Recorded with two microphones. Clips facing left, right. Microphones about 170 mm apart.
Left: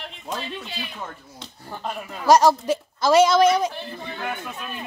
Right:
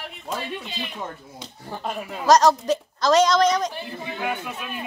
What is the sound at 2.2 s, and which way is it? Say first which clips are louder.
A woman's voice: left 1 dB; 10° left (ahead or behind).